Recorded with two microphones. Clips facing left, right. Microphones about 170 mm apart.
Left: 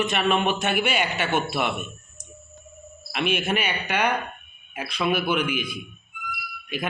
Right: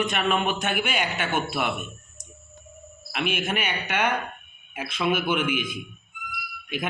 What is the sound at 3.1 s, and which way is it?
A man's voice, centre (ahead or behind).